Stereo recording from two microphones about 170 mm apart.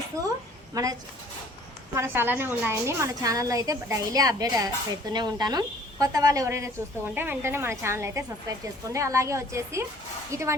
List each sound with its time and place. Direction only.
0.7 s speech: 20° right (ahead or behind)
2.0 s a woman's voice: 10° right (ahead or behind)